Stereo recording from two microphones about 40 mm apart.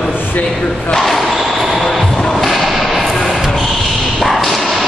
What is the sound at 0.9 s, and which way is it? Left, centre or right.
Speech, centre.